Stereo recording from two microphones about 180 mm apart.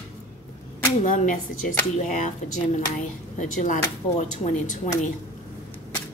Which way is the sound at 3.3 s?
45° left (ahead or behind).